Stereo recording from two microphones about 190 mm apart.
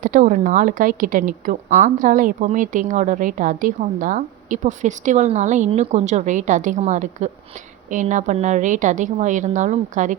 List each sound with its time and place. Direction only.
0.0 s speech: 45° right (ahead or behind)